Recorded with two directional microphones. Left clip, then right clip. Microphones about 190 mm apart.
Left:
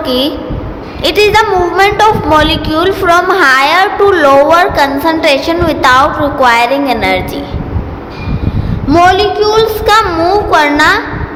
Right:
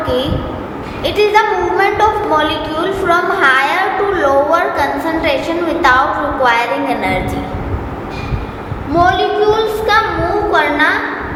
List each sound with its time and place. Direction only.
0.0 s a woman's voice: 50° left (ahead or behind)
8.9 s a woman's voice: 60° left (ahead or behind)